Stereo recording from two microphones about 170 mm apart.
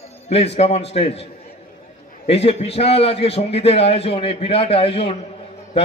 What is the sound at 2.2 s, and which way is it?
Speech, 35° left (ahead or behind).